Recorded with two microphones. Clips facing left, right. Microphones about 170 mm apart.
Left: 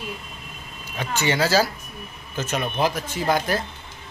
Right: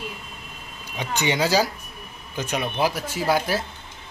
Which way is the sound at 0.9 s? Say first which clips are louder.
Left 1 dB; 15° right (ahead or behind).